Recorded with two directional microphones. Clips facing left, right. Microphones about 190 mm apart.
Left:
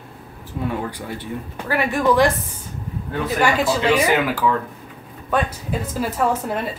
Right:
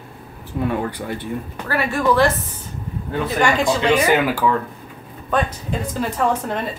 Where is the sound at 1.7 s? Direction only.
15° left (ahead or behind).